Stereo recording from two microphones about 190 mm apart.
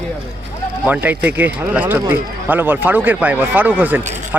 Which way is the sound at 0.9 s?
10° right (ahead or behind).